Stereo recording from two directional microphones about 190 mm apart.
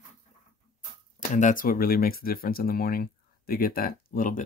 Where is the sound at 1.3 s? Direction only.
45° left (ahead or behind).